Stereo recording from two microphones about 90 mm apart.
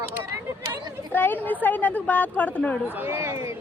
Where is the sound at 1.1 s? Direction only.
20° left (ahead or behind).